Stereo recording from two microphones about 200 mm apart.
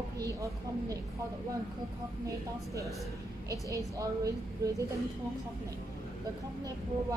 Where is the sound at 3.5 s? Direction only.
15° right (ahead or behind).